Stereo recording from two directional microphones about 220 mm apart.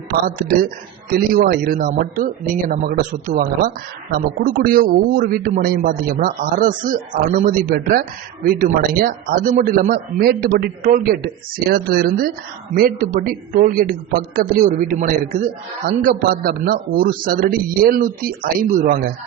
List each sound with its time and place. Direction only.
0.1 s speech: 40° right (ahead or behind)